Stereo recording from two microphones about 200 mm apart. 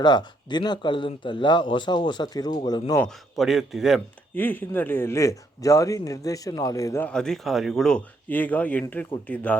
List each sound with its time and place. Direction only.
0.0 s speech: 20° left (ahead or behind)
3.0 s a man's voice: centre (ahead or behind)
4.4 s speech: 10° left (ahead or behind)